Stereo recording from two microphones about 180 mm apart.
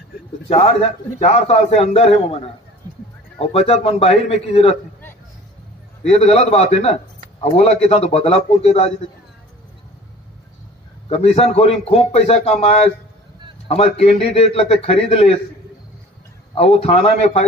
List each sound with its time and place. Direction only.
1.2 s a man's voice: 35° left (ahead or behind)
6.0 s a man's voice: 35° left (ahead or behind)
11.1 s a man's voice: 35° left (ahead or behind)
16.5 s a man's voice: 35° left (ahead or behind)